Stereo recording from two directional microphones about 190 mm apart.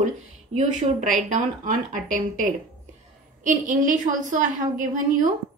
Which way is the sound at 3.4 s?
40° right (ahead or behind).